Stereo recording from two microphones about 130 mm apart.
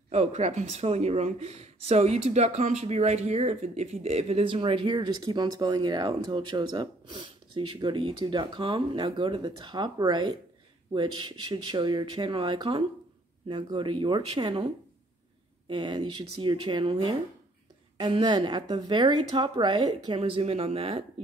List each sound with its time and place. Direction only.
0.1 s a woman's voice: 55° right (ahead or behind); by 14.7 s 40° right (ahead or behind)
15.7 s a woman's voice: 35° right (ahead or behind)